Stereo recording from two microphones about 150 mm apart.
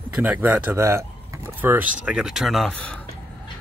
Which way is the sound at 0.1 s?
10° right (ahead or behind).